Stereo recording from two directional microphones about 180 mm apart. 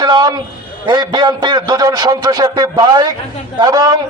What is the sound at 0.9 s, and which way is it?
A man's voice, 25° right (ahead or behind).